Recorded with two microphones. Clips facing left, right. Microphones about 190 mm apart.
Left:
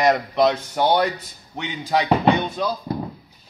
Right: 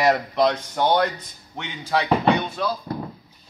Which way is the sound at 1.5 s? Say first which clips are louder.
Left 2 dB; 15° left (ahead or behind).